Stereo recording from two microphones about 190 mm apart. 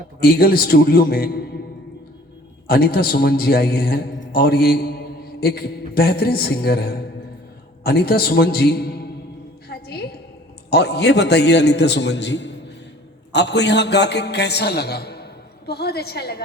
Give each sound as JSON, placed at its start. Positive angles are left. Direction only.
{"t": 0.2, "sound": "a man's voice", "side_deg": 55}
{"t": 2.6, "sound": "a man's voice", "side_deg": 55}
{"t": 9.6, "sound": "a sound", "side_deg": 55}
{"t": 10.7, "sound": "a man's voice", "side_deg": 60}